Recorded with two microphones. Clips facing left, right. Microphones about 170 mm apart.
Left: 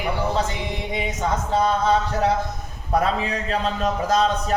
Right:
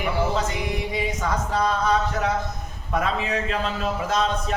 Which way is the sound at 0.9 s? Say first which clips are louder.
Left 3 dB; 25° left (ahead or behind).